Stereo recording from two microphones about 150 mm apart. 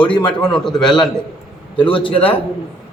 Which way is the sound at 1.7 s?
35° left (ahead or behind).